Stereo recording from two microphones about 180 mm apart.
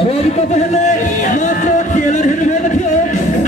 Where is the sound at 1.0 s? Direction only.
45° left (ahead or behind).